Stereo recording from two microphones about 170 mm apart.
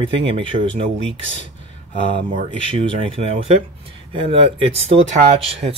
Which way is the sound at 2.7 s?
35° right (ahead or behind).